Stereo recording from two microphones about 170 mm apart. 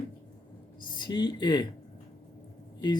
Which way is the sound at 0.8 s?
25° left (ahead or behind).